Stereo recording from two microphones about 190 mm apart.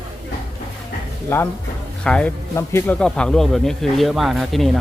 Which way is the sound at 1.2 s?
10° left (ahead or behind).